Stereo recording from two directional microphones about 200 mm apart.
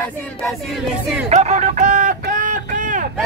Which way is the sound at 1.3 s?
35° right (ahead or behind).